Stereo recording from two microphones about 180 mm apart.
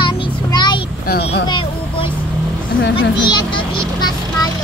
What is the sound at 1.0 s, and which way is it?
Speech, 60° left (ahead or behind).